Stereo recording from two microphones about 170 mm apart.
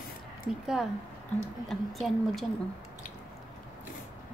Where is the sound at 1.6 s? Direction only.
Centre (ahead or behind).